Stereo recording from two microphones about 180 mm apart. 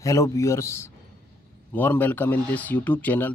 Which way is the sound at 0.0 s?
15° left (ahead or behind).